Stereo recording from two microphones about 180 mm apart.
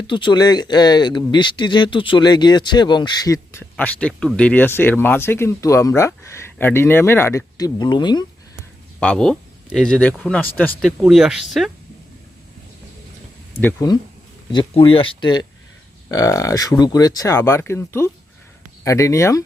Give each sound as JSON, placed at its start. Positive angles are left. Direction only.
{"t": 0.1, "sound": "speech", "side_deg": 25}
{"t": 9.0, "sound": "speech", "side_deg": 5}
{"t": 13.6, "sound": "speech", "side_deg": 10}
{"t": 14.5, "sound": "speech", "side_deg": 25}